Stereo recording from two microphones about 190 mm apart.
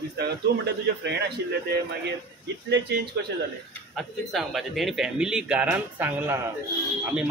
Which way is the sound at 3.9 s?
Centre (ahead or behind).